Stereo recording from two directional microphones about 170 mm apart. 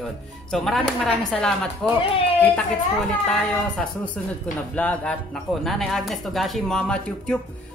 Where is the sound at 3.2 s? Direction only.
5° left (ahead or behind).